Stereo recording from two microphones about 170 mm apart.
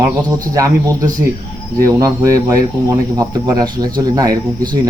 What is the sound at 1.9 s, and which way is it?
Speech, 20° right (ahead or behind).